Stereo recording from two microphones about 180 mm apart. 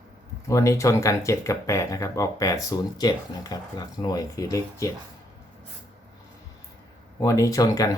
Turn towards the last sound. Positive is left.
turn(degrees=20)  # may be behind; listen again after turning